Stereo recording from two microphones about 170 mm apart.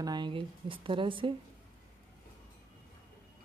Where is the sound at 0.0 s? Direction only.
25° right (ahead or behind).